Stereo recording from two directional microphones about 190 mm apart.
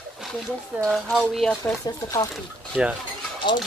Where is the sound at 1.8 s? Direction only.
20° left (ahead or behind).